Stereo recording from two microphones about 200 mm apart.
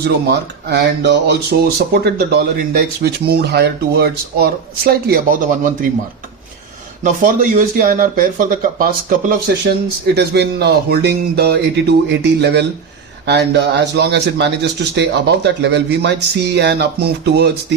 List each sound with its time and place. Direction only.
0.0 s speech: 55° right (ahead or behind)
7.0 s speech: 40° right (ahead or behind); by 17.7 s 55° right (ahead or behind)